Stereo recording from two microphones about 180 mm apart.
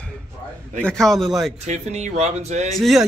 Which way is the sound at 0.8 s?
5° left (ahead or behind).